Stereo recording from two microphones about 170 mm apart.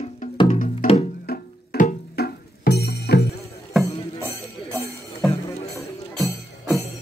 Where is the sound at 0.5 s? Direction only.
50° left (ahead or behind); by 3.3 s 80° left.